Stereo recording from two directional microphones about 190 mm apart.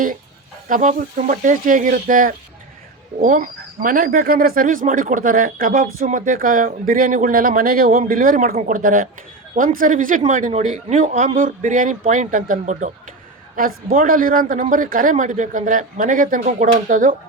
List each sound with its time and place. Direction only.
0.7 s speech: 45° right (ahead or behind)